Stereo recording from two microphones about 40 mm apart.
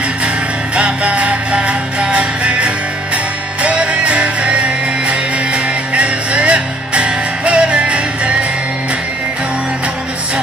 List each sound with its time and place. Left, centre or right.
0.7 s music: right